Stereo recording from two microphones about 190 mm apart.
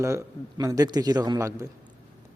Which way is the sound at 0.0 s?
15° right (ahead or behind).